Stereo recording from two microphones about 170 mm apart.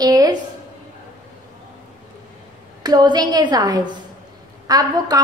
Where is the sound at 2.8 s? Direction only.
25° right (ahead or behind).